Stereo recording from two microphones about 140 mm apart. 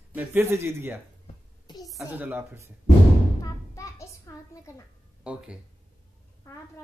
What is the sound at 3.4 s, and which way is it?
A child's voice, 25° left (ahead or behind).